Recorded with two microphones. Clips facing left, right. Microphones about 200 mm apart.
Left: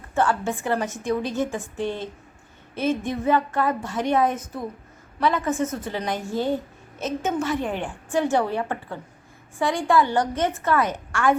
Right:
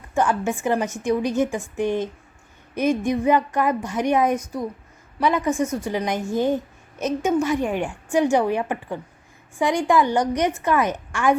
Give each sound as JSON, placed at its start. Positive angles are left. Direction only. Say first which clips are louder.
{"t": 0.1, "sound": "a woman's voice", "louder": "right 1 dB", "side_deg": -15}